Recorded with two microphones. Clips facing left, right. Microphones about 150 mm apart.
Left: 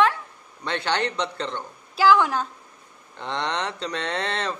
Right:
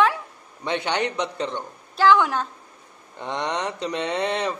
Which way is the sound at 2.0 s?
Centre (ahead or behind).